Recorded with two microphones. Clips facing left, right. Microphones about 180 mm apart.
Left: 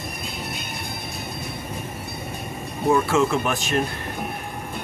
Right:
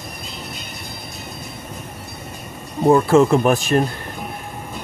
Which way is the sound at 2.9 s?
35° right (ahead or behind).